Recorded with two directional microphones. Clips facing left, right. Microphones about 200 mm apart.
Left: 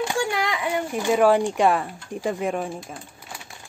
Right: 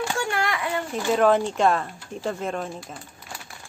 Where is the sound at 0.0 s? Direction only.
15° left (ahead or behind).